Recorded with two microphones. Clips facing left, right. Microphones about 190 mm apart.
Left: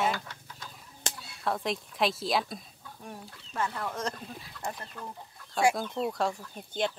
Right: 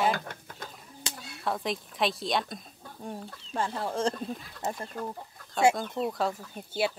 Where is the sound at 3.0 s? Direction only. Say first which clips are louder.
Right 6 dB; 30° right (ahead or behind).